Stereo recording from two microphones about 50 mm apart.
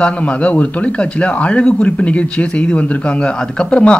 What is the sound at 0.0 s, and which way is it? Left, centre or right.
A man's voice, left.